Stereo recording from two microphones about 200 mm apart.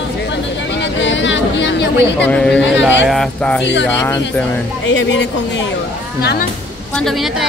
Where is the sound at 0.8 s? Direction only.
65° left (ahead or behind).